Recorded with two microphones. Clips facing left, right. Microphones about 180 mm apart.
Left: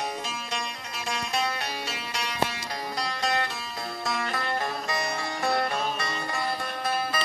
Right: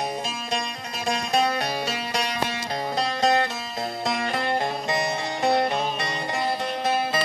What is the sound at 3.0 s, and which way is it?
Music, 25° right (ahead or behind).